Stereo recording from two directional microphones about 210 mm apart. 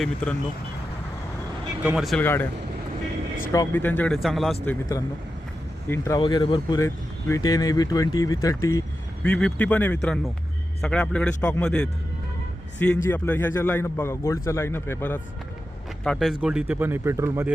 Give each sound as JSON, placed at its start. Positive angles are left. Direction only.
{"t": 1.8, "sound": "speech", "side_deg": -5}
{"t": 3.5, "sound": "speech", "side_deg": 15}
{"t": 4.6, "sound": "speech", "side_deg": 10}
{"t": 16.0, "sound": "speech", "side_deg": 0}